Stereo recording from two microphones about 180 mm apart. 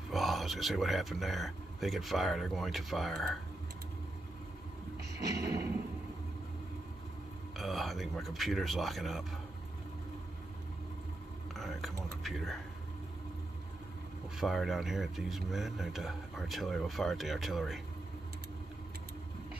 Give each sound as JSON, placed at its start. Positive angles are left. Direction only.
{"t": 0.1, "sound": "speech", "side_deg": 0}
{"t": 5.2, "sound": "a sound", "side_deg": -20}
{"t": 7.5, "sound": "speech", "side_deg": 0}
{"t": 11.5, "sound": "a sound", "side_deg": 0}
{"t": 12.2, "sound": "speech", "side_deg": 0}
{"t": 14.4, "sound": "speech", "side_deg": 0}